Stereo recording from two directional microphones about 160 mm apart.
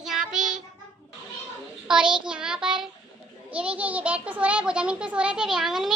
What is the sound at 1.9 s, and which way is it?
A child's voice, 5° right (ahead or behind).